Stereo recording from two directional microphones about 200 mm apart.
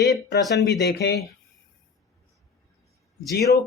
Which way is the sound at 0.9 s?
55° left (ahead or behind).